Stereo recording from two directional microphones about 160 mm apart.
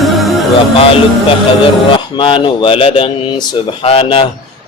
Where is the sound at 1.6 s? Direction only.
30° left (ahead or behind).